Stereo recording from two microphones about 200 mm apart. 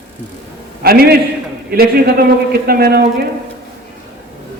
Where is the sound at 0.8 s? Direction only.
50° right (ahead or behind).